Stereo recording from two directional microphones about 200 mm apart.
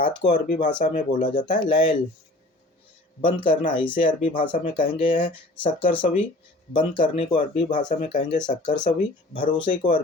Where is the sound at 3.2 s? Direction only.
25° left (ahead or behind).